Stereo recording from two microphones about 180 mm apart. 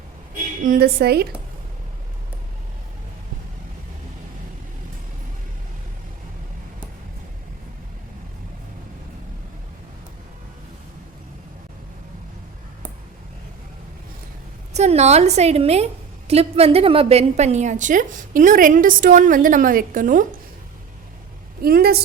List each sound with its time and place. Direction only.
0.6 s a woman's voice: 55° right (ahead or behind)
14.7 s a woman's voice: 40° right (ahead or behind)
21.6 s a woman's voice: 60° right (ahead or behind)